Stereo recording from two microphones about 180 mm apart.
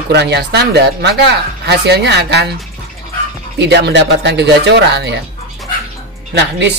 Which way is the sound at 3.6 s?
70° right (ahead or behind).